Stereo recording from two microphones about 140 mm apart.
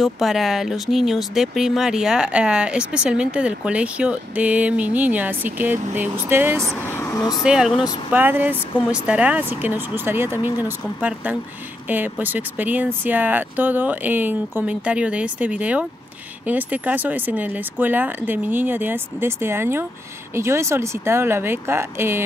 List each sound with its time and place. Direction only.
0.0 s speech: centre (ahead or behind)
6.8 s speech: 15° left (ahead or behind)
7.4 s speech: 5° right (ahead or behind)